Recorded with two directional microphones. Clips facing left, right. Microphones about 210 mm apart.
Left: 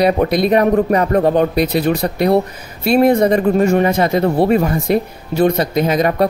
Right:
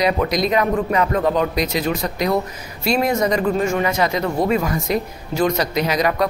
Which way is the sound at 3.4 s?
40° left (ahead or behind).